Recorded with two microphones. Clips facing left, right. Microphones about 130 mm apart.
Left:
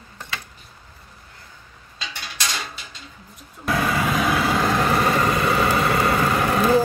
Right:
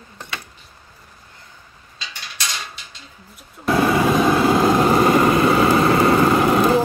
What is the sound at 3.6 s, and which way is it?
Vehicle, 25° right (ahead or behind).